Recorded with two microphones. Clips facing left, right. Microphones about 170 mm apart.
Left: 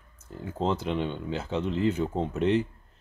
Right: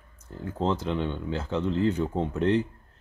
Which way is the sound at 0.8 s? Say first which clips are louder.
Right 1 dB; 15° left (ahead or behind).